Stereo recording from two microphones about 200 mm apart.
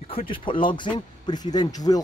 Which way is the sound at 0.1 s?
25° left (ahead or behind).